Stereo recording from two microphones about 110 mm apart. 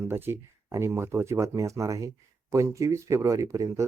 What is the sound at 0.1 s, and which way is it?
Speech, 20° right (ahead or behind).